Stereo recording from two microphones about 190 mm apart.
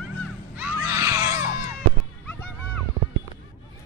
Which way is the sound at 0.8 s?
15° right (ahead or behind).